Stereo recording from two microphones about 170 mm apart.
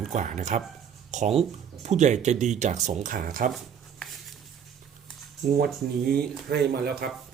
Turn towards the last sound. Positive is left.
turn(degrees=-65)  # may be behind; listen again after turning